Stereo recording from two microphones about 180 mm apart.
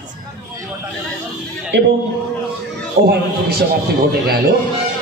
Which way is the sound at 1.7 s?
70° right (ahead or behind).